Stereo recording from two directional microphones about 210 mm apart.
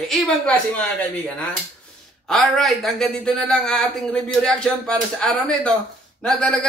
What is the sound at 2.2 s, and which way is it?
Speech, centre (ahead or behind).